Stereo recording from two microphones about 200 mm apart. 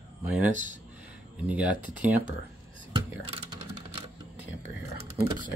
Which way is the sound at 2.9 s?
25° right (ahead or behind).